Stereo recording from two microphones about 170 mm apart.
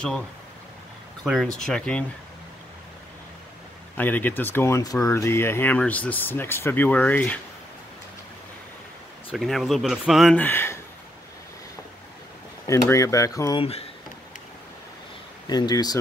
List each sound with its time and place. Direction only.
1.2 s speech: centre (ahead or behind)
3.9 s speech: 10° left (ahead or behind)
9.3 s speech: centre (ahead or behind)
10.4 s speech: 15° left (ahead or behind)
12.6 s speech: 20° left (ahead or behind)
13.6 s speech: 35° left (ahead or behind)
15.4 s speech: 25° left (ahead or behind)